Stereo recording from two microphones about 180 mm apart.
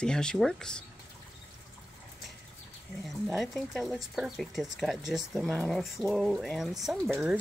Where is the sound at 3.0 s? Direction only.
Centre (ahead or behind).